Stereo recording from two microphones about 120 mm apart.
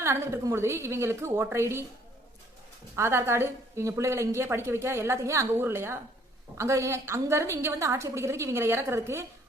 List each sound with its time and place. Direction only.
0.0 s a woman's voice: 20° right (ahead or behind)
2.9 s a woman's voice: 20° right (ahead or behind)